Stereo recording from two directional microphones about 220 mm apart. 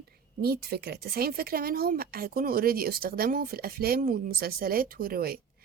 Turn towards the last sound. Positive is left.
turn(degrees=-45)  # may be behind; listen again after turning